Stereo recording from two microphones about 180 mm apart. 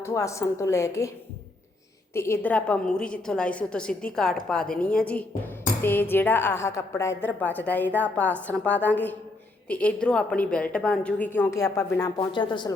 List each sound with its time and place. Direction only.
0.0 s a woman's voice: 15° left (ahead or behind)
2.1 s a woman's voice: 15° left (ahead or behind)